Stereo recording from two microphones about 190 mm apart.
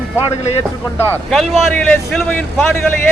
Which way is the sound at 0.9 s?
Centre (ahead or behind).